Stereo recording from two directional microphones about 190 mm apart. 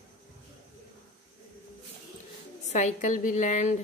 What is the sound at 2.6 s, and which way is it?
A woman's voice, 40° left (ahead or behind).